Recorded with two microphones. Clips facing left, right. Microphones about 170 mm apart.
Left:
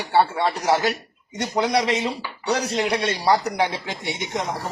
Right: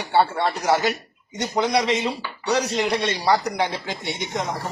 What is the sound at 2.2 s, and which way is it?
Speech, 5° left (ahead or behind).